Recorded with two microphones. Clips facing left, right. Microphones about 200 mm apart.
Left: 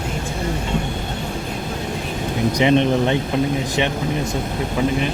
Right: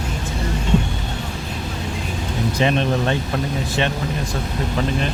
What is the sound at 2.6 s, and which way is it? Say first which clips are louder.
Speech: left 4 dB; 20° left (ahead or behind).